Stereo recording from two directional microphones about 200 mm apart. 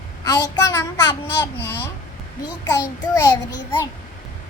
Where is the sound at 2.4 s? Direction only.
20° left (ahead or behind).